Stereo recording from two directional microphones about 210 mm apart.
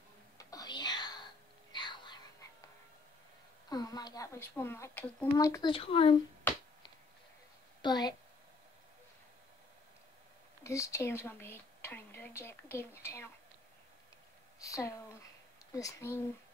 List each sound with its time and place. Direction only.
0.4 s whispering: 15° left (ahead or behind)
3.6 s a woman's voice: 20° left (ahead or behind)
7.8 s a woman's voice: 20° left (ahead or behind)
10.6 s a woman's voice: 15° left (ahead or behind)
14.6 s a woman's voice: 15° left (ahead or behind)